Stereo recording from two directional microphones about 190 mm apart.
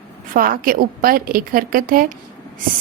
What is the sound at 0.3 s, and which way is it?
A woman's voice, 50° right (ahead or behind).